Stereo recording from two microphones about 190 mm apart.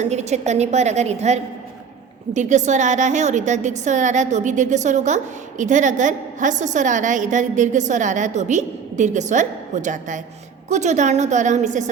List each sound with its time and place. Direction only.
0.0 s a woman's voice: 35° right (ahead or behind)